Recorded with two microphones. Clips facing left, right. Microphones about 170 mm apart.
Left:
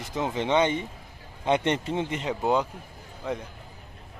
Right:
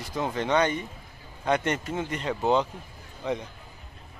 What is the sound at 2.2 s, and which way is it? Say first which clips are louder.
A man's voice: right 3 dB; 10° left (ahead or behind).